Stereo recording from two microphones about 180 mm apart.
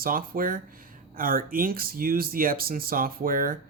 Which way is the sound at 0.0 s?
50° right (ahead or behind).